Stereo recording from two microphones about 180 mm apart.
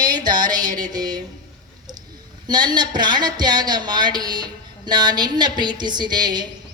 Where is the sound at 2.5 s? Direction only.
25° right (ahead or behind).